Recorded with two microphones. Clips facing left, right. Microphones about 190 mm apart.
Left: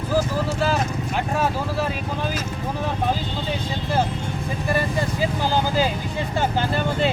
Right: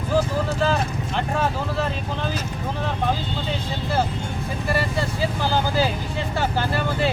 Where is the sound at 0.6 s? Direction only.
10° left (ahead or behind).